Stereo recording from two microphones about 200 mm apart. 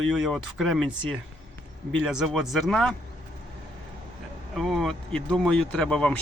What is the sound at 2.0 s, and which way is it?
Speech, centre (ahead or behind).